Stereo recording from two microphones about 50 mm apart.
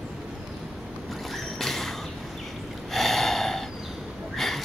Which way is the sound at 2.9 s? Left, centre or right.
Centre.